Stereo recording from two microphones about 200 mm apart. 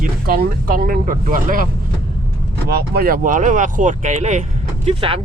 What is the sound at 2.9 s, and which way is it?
Speech, 50° right (ahead or behind).